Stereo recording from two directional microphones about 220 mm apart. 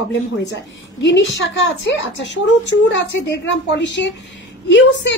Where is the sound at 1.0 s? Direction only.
55° left (ahead or behind).